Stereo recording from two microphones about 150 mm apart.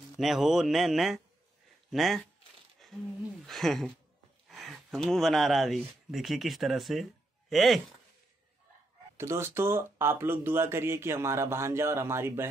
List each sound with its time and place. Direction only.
0.2 s a man's voice: centre (ahead or behind)
2.8 s a sound: centre (ahead or behind)
3.4 s a man's voice: centre (ahead or behind)
9.1 s speech: 15° right (ahead or behind)